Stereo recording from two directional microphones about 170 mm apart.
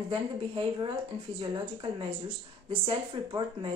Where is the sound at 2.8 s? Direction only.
30° right (ahead or behind).